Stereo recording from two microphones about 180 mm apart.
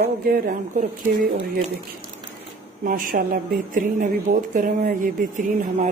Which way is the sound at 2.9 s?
50° right (ahead or behind).